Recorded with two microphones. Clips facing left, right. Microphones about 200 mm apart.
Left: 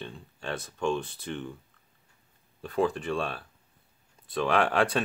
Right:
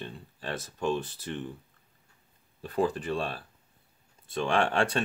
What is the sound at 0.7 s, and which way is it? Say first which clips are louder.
Speech: left 1 dB; 35° right (ahead or behind).